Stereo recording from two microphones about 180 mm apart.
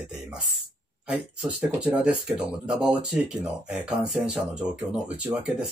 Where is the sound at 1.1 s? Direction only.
5° right (ahead or behind).